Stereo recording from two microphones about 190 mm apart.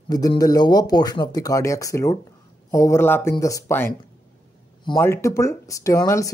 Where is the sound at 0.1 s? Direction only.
20° left (ahead or behind).